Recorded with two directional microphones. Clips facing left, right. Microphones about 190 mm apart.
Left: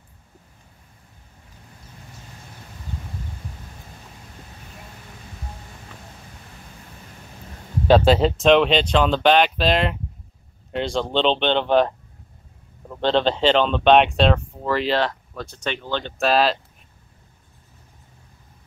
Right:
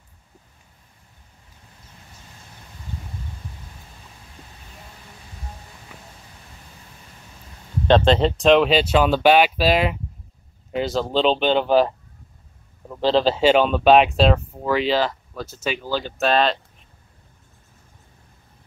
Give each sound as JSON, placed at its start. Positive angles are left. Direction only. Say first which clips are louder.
{"t": 7.8, "sound": "speech", "louder": "left 1 dB", "side_deg": 5}